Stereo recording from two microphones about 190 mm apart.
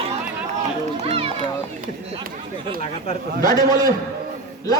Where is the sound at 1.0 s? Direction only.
30° right (ahead or behind).